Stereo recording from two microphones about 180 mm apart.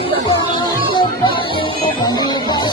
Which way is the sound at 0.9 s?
25° left (ahead or behind).